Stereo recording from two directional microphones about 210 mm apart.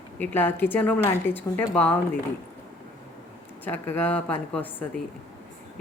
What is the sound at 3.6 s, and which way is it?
Speech, 10° left (ahead or behind).